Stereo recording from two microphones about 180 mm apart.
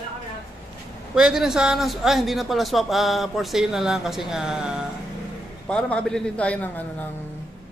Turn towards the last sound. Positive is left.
turn(degrees=10)  # may be behind; listen again after turning